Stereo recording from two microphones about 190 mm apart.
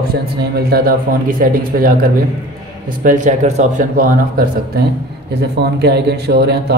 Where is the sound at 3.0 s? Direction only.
40° right (ahead or behind).